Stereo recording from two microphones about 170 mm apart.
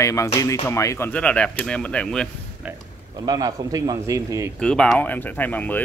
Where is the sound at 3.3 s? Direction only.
20° right (ahead or behind).